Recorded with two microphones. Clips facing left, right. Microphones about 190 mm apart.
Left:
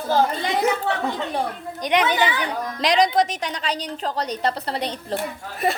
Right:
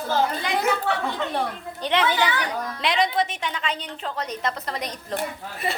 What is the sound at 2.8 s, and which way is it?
A woman's voice, 40° left (ahead or behind).